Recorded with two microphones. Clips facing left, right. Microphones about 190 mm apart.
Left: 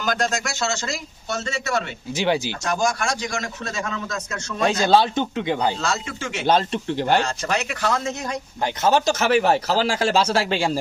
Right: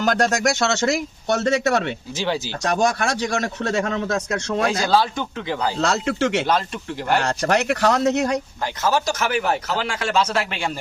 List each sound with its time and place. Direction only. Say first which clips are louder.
0.0 s speech: right 5 dB; 65° right (ahead or behind)
2.1 s speech: left 4 dB; 15° left (ahead or behind)
2.6 s speech: right 4 dB; 65° right (ahead or behind)
4.6 s speech: left 3 dB; 25° left (ahead or behind)
5.8 s speech: right 6 dB; 65° right (ahead or behind)
6.5 s speech: left 3 dB; 30° left (ahead or behind)
7.2 s speech: right 4 dB; 65° right (ahead or behind)
8.6 s speech: left 4 dB; 20° left (ahead or behind)